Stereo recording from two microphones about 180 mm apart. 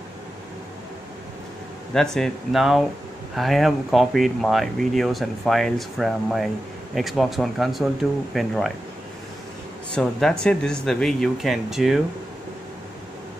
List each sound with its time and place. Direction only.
2.0 s speech: 5° left (ahead or behind)
10.0 s speech: 5° left (ahead or behind)